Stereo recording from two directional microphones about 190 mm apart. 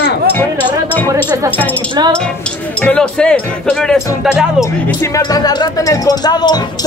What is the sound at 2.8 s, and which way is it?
Speech, 5° left (ahead or behind).